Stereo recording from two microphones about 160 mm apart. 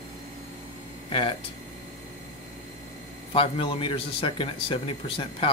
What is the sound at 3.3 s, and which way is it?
A man's voice, 35° left (ahead or behind).